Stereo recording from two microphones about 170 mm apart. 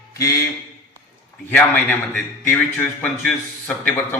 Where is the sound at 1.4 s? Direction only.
10° left (ahead or behind).